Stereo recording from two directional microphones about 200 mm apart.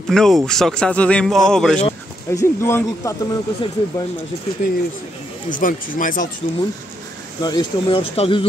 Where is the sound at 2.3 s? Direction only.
15° left (ahead or behind).